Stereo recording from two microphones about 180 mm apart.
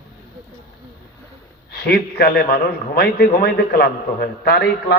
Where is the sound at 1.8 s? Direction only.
60° left (ahead or behind).